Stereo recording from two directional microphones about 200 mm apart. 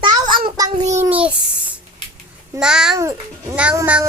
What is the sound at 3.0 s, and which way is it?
A child's voice, 15° right (ahead or behind).